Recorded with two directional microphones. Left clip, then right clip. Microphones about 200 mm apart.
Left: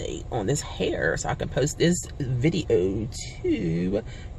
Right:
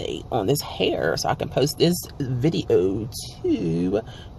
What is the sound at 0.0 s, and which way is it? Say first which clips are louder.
Speech: right 4 dB; 15° right (ahead or behind).